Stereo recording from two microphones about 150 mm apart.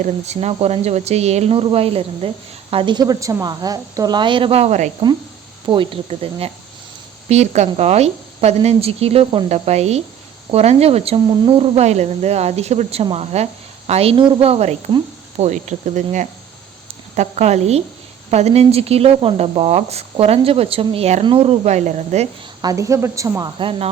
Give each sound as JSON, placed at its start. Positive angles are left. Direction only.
{"t": 0.0, "sound": "speech", "side_deg": -45}
{"t": 5.6, "sound": "a woman's voice", "side_deg": -35}
{"t": 22.6, "sound": "a woman's voice", "side_deg": -20}
{"t": 23.6, "sound": "speech", "side_deg": -35}